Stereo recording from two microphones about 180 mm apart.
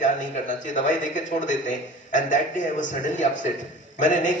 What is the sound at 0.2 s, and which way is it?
A man's voice, 45° left (ahead or behind).